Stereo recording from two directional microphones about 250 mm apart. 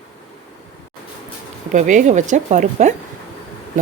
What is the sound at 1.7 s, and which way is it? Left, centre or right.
A woman's voice, right.